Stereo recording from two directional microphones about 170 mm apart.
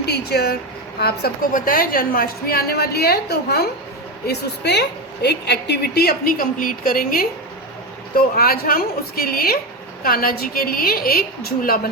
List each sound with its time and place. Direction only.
0.0 s a woman's voice: 70° left (ahead or behind)
4.3 s a woman's voice: 80° left; by 11.9 s 60° left (ahead or behind)